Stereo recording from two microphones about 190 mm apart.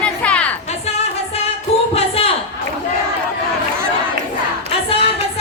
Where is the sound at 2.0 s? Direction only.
30° left (ahead or behind).